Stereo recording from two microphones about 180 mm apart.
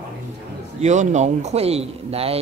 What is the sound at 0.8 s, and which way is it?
A man's voice, 40° right (ahead or behind).